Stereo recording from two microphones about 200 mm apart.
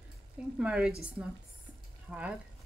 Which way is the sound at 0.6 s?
5° right (ahead or behind).